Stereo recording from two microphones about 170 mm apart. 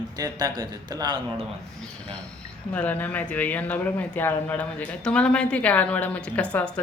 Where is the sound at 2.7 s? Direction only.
10° left (ahead or behind).